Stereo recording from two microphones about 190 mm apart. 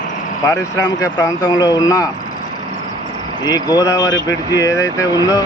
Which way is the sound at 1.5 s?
20° left (ahead or behind).